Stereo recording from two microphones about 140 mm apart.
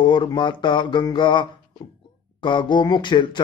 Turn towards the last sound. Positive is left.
turn(degrees=35)  # may be behind; listen again after turning